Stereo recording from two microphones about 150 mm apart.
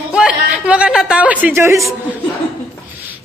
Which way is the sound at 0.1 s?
5° right (ahead or behind).